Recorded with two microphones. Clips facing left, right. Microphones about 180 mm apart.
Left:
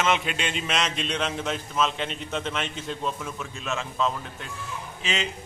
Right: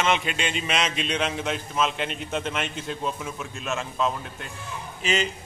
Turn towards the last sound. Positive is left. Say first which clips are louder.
# right 4 dB
turn(degrees=0)  # may be behind; listen again after turning